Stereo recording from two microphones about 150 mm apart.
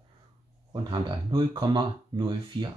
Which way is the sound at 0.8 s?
30° right (ahead or behind).